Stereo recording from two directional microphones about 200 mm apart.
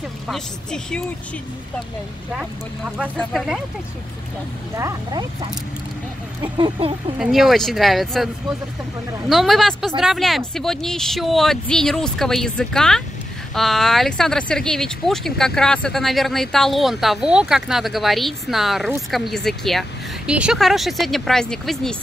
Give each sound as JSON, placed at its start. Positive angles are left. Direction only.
{"t": 0.3, "sound": "speech", "side_deg": 5}
{"t": 2.3, "sound": "speech", "side_deg": 0}
{"t": 4.7, "sound": "speech", "side_deg": -15}
{"t": 6.4, "sound": "a sound", "side_deg": -25}
{"t": 7.2, "sound": "speech", "side_deg": 0}
{"t": 9.3, "sound": "speech", "side_deg": 0}